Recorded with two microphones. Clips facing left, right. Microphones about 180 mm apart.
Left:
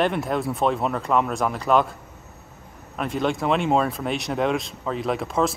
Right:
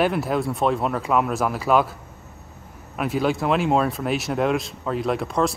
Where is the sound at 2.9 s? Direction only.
5° right (ahead or behind).